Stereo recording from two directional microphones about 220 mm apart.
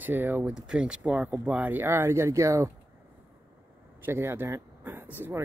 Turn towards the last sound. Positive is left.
turn(degrees=-10)  # may be behind; listen again after turning